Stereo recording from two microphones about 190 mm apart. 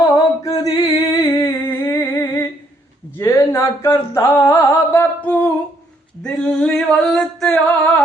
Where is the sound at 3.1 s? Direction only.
15° left (ahead or behind).